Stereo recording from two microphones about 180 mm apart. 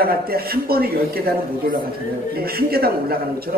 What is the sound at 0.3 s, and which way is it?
Speech, 60° right (ahead or behind).